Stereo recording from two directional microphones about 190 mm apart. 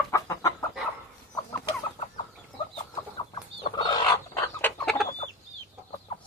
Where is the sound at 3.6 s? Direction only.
25° left (ahead or behind).